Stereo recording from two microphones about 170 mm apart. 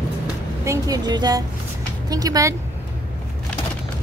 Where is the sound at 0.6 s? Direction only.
20° right (ahead or behind).